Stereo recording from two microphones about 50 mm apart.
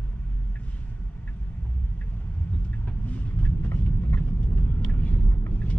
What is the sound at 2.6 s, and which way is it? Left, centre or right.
Vehicle, left.